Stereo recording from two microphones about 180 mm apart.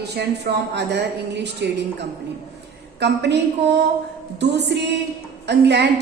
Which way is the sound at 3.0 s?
70° right (ahead or behind).